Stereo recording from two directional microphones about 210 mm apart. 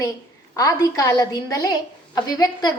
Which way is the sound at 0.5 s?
15° left (ahead or behind).